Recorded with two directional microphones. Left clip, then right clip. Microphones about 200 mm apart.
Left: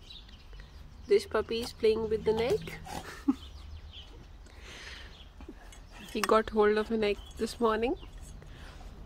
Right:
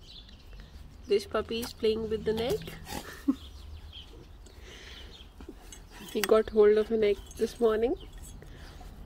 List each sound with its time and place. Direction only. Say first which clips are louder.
1.0 s speech: left 1 dB; 5° left (ahead or behind)
2.9 s dog: right 1 dB; 10° left (ahead or behind)
4.6 s a sound: left 2 dB; 10° left (ahead or behind)
6.1 s speech: right 2 dB; 10° left (ahead or behind)